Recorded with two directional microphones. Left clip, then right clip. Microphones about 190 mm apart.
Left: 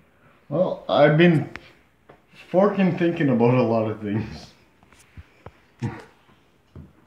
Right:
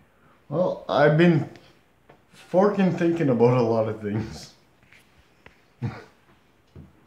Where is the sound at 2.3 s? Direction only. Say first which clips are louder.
Left 1 dB; 10° right (ahead or behind).